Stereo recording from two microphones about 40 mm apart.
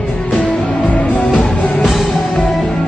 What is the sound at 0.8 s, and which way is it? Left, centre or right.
Music, left.